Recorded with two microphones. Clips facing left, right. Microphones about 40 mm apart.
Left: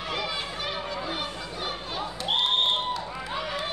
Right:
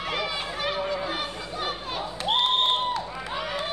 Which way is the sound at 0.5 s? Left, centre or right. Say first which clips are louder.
Right 4 dB; right.